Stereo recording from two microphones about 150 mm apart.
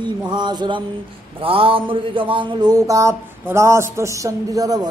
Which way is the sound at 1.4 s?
35° right (ahead or behind).